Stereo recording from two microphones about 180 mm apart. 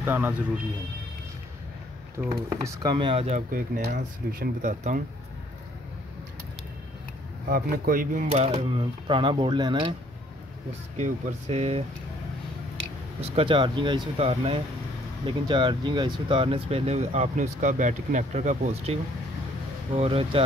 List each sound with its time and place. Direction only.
0.0 s speech: 10° right (ahead or behind)
2.2 s speech: 10° right (ahead or behind); by 3.4 s 35° right (ahead or behind)
3.5 s speech: 50° right (ahead or behind)
7.4 s speech: 55° right (ahead or behind)
8.3 s speech: 35° right (ahead or behind)
11.0 s speech: 40° right (ahead or behind)
13.2 s speech: 30° right (ahead or behind)
20.0 s speech: 30° right (ahead or behind)